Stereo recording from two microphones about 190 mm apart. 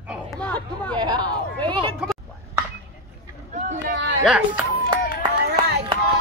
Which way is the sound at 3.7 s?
80° right.